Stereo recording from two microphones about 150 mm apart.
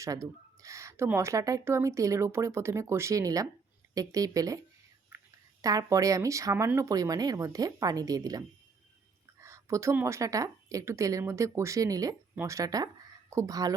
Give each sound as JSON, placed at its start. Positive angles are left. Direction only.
{"t": 0.0, "sound": "speech", "side_deg": -20}
{"t": 5.6, "sound": "speech", "side_deg": -20}